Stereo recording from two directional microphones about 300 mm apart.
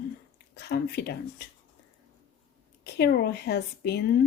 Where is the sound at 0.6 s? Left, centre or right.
Left.